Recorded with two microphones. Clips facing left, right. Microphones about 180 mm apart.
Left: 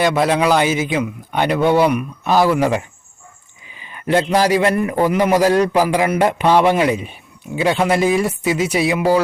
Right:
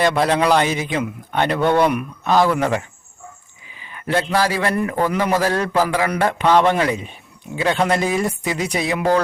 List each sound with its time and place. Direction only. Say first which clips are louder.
0.0 s a man's voice: left 1 dB; 5° left (ahead or behind)
3.8 s speech: left 4 dB; 20° left (ahead or behind)